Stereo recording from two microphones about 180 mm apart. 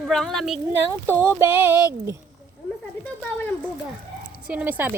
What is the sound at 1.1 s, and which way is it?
Speech, 10° right (ahead or behind).